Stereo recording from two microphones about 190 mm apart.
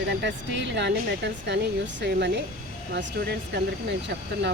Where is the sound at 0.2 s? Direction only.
70° right (ahead or behind).